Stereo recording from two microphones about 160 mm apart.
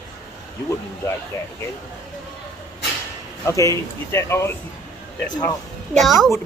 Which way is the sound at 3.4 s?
20° left (ahead or behind).